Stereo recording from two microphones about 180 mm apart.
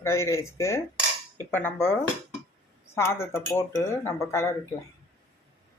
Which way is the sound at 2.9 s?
15° left (ahead or behind).